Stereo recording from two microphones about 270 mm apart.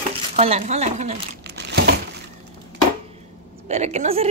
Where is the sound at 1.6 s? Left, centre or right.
Right.